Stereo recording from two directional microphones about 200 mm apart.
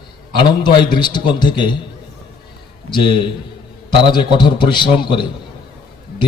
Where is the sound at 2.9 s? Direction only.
25° left (ahead or behind).